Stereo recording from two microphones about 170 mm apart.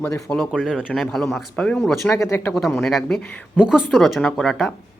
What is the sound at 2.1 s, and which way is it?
Speech, 15° left (ahead or behind).